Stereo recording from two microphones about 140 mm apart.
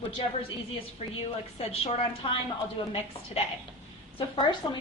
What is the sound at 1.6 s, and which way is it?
Speech, 45° left (ahead or behind).